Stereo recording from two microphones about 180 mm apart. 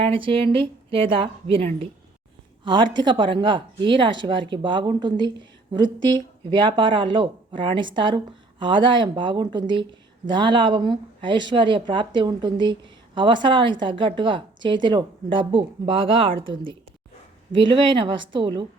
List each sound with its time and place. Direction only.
0.0 s a woman's voice: 30° right (ahead or behind)
6.5 s a woman's voice: 25° right (ahead or behind)